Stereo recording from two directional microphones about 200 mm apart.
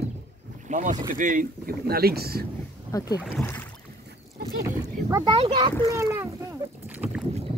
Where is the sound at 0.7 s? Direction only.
35° right (ahead or behind).